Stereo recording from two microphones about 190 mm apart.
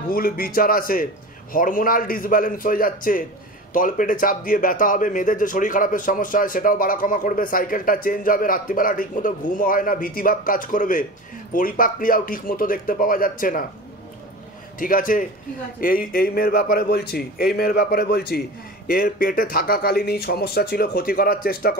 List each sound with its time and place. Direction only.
0.1 s speech: 50° left (ahead or behind)
14.8 s speech: 45° left (ahead or behind)